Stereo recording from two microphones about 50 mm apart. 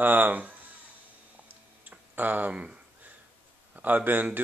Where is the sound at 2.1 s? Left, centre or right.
Right.